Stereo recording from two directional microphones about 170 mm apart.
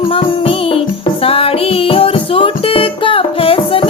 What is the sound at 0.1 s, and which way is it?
Music, 35° left (ahead or behind).